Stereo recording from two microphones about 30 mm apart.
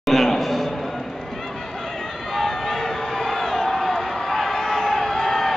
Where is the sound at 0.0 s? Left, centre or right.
Centre.